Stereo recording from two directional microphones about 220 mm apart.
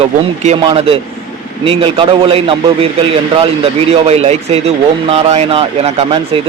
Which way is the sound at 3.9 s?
30° right (ahead or behind).